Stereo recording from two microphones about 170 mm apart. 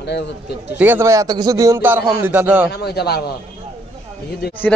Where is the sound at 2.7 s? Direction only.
70° left (ahead or behind).